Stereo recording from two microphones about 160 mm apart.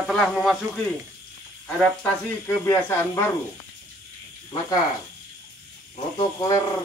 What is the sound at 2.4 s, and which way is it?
Speech, 15° left (ahead or behind).